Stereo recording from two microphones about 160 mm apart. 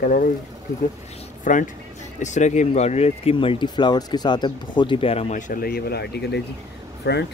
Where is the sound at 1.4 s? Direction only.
55° left (ahead or behind); by 5.3 s 35° left (ahead or behind).